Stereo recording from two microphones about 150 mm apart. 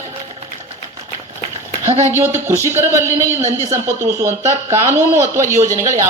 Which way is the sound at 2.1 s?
15° right (ahead or behind).